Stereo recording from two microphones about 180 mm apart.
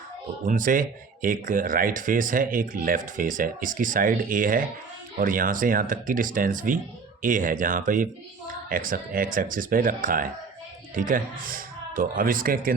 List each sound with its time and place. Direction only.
0.4 s speech: 45° right (ahead or behind)